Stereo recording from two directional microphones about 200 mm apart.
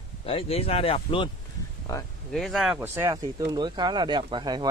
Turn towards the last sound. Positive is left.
turn(degrees=-20)  # may be behind; listen again after turning